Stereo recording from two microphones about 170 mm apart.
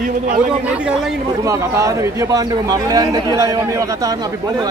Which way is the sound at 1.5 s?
20° right (ahead or behind).